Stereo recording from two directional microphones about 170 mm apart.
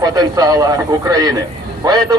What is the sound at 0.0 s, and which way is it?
A man's voice, 20° right (ahead or behind).